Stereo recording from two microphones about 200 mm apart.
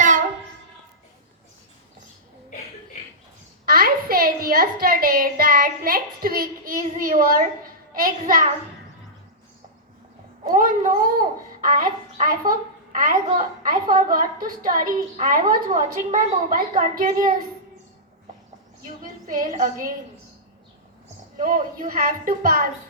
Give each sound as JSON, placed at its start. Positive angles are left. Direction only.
{"t": 3.7, "sound": "a woman's voice", "side_deg": -45}
{"t": 10.5, "sound": "a woman's voice", "side_deg": -45}
{"t": 18.8, "sound": "a woman's voice", "side_deg": -45}
{"t": 21.3, "sound": "a woman's voice", "side_deg": -40}